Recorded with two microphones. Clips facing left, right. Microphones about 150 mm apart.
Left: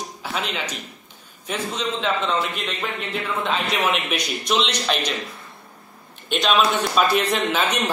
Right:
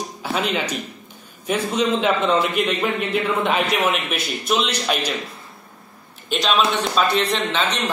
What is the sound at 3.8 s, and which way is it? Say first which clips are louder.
Speech: right 1 dB; centre (ahead or behind).